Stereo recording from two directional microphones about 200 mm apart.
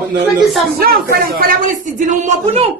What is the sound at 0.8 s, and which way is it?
Speech, 50° right (ahead or behind).